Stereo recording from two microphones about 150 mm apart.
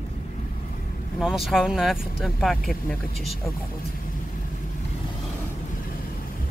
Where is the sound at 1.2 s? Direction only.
Centre (ahead or behind).